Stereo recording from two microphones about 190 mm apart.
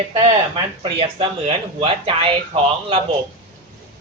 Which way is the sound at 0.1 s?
30° right (ahead or behind).